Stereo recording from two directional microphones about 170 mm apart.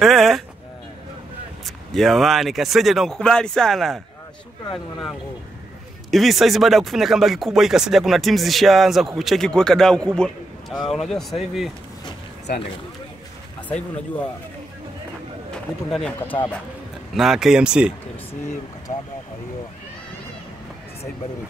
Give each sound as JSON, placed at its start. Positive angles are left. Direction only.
{"t": 0.0, "sound": "a sound", "side_deg": 0}
{"t": 2.0, "sound": "speech", "side_deg": 0}
{"t": 6.0, "sound": "speech", "side_deg": 0}
{"t": 13.7, "sound": "speech", "side_deg": 5}
{"t": 15.9, "sound": "speech", "side_deg": 5}
{"t": 18.9, "sound": "speech", "side_deg": 40}